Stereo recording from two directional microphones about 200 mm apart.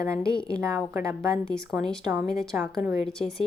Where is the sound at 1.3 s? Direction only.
Centre (ahead or behind).